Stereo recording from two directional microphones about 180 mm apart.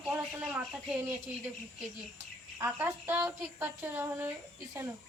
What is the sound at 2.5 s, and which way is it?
A woman's voice, 10° right (ahead or behind).